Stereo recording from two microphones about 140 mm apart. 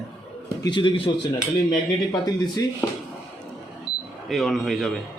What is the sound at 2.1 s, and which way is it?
Speech, 25° left (ahead or behind).